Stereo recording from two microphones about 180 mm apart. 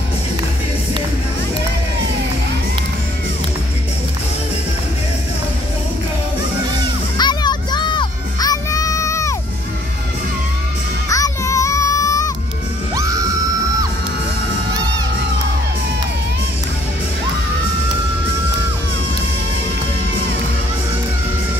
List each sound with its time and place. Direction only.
7.2 s music: 25° left (ahead or behind)
11.1 s music: 20° left (ahead or behind)
12.9 s music: 20° right (ahead or behind)